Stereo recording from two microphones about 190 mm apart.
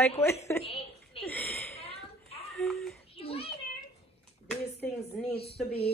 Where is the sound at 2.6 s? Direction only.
Centre (ahead or behind).